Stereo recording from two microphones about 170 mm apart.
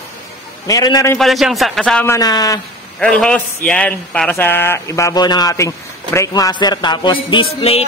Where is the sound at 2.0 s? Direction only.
20° left (ahead or behind).